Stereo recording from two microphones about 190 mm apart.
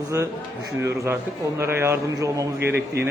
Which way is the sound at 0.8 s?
15° right (ahead or behind).